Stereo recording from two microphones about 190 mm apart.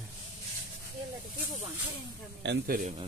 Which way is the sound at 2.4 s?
65° right (ahead or behind).